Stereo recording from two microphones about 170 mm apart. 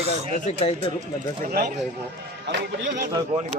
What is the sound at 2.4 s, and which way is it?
Speech, 90° right.